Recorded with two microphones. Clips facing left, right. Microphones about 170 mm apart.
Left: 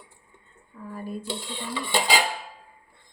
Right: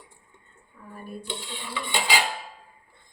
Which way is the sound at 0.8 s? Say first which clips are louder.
Left 7 dB; 65° left (ahead or behind).